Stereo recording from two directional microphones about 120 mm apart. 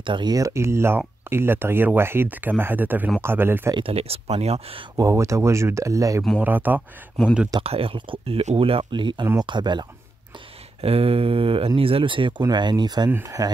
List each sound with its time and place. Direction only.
0.0 s speech: 40° right (ahead or behind); by 3.7 s 20° right (ahead or behind)
3.7 s speech: 55° right (ahead or behind)
4.9 s speech: 25° right (ahead or behind)
6.4 s speech: 15° right (ahead or behind)
7.6 s speech: 50° right (ahead or behind)
10.8 s speech: 55° right (ahead or behind); by 13.1 s 35° right (ahead or behind)
13.1 s speech: 25° right (ahead or behind)